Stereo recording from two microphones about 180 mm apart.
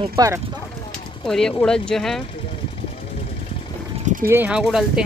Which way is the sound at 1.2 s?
5° left (ahead or behind).